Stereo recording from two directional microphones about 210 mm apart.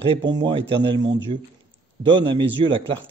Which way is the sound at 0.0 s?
25° right (ahead or behind).